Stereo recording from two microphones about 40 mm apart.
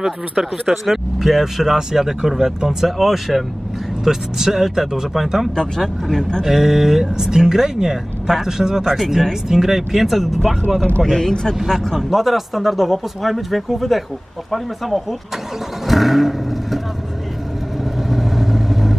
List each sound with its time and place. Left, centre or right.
0.7 s speech: centre
5.6 s speech: centre
6.4 s speech: centre
11.1 s speech: centre
12.1 s speech: centre
18.1 s vehicle: centre